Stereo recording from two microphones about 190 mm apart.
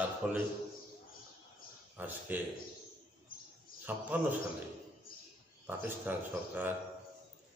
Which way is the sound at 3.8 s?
10° right (ahead or behind).